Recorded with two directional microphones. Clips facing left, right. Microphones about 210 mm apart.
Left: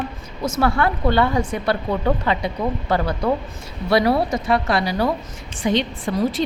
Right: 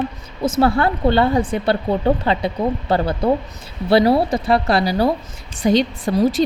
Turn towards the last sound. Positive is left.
turn(degrees=-40)  # may be behind; listen again after turning